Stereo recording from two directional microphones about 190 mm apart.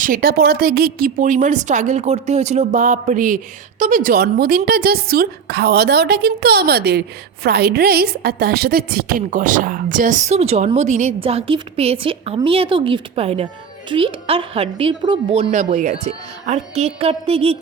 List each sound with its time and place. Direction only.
0.0 s a woman's voice: 50° right (ahead or behind); by 17.6 s 30° right (ahead or behind)